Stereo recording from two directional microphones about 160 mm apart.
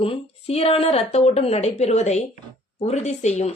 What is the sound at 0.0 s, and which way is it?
A woman's voice, 35° left (ahead or behind).